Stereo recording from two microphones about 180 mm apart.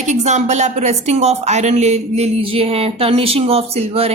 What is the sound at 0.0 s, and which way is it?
Speech, 40° right (ahead or behind).